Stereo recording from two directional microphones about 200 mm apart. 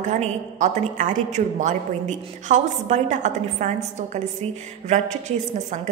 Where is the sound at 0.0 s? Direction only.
35° right (ahead or behind).